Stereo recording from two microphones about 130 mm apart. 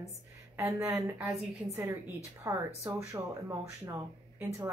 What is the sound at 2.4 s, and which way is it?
A woman's voice, 25° right (ahead or behind).